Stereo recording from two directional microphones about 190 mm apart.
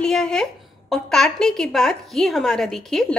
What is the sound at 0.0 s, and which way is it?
A woman's voice, 5° left (ahead or behind).